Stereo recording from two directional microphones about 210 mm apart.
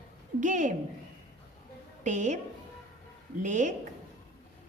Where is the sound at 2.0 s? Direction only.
35° right (ahead or behind).